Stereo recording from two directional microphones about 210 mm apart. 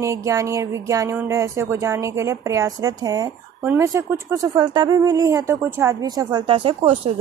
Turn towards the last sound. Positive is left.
turn(degrees=-25)  # may be behind; listen again after turning